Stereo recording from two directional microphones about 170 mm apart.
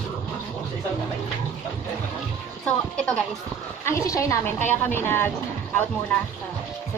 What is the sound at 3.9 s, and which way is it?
A woman's voice, 15° left (ahead or behind).